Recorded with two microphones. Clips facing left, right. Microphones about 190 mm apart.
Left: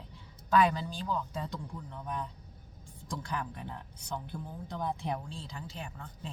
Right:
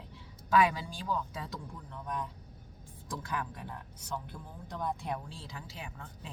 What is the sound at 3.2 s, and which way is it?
Speech, 5° right (ahead or behind).